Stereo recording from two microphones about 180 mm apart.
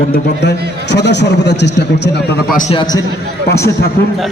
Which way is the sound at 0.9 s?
70° left (ahead or behind).